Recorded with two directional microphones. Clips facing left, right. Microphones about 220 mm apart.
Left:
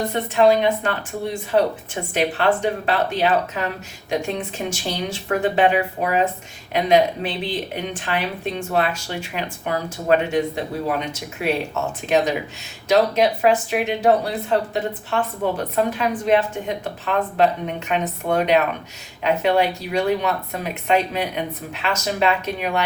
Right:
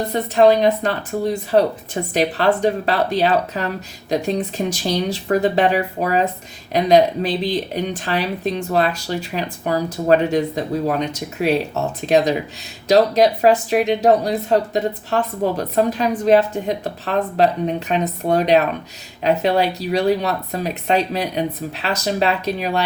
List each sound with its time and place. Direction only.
0.2 s speech: 40° right (ahead or behind)